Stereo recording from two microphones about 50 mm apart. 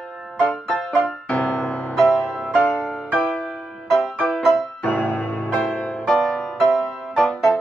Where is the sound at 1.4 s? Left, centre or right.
Centre.